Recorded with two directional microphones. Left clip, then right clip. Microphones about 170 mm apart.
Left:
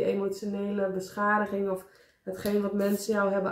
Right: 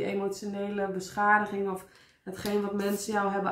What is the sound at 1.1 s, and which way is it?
Speech, 20° right (ahead or behind).